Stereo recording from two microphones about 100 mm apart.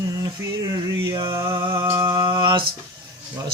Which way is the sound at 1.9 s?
50° right (ahead or behind).